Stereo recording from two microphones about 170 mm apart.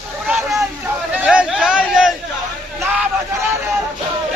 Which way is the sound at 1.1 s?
5° right (ahead or behind).